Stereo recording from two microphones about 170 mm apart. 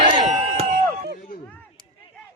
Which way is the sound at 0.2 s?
40° right (ahead or behind).